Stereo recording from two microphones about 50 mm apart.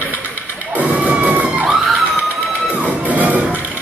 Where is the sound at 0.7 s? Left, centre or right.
Right.